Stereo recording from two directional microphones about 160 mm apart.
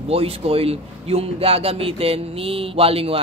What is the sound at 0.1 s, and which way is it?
A man's voice, 35° right (ahead or behind).